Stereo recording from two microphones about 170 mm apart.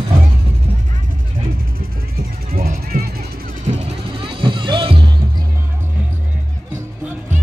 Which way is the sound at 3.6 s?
35° right (ahead or behind).